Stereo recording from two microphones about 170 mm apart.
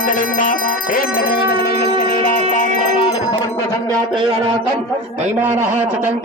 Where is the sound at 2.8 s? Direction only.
30° left (ahead or behind).